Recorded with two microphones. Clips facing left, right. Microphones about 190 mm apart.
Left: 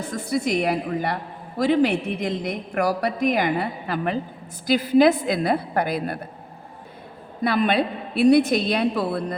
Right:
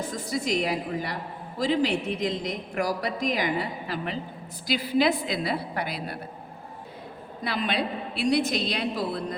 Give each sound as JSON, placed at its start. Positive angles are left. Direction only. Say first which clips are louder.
{"t": 0.3, "sound": "a woman's voice", "louder": "left 5 dB", "side_deg": 60}
{"t": 7.4, "sound": "a woman's voice", "louder": "left 7 dB", "side_deg": 55}